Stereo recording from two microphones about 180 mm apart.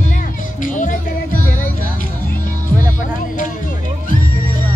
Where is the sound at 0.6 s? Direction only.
45° left (ahead or behind).